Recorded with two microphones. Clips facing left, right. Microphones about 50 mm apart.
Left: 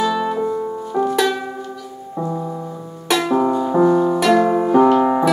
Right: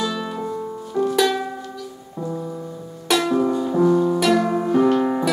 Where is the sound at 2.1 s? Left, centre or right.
Left.